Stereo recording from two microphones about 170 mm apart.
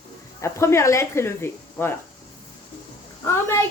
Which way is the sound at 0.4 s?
15° left (ahead or behind).